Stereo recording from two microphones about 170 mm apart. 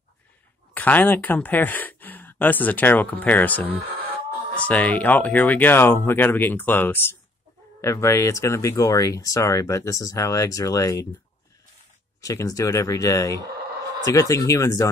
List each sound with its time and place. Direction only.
0.7 s speech: 10° left (ahead or behind)
12.2 s speech: 20° left (ahead or behind)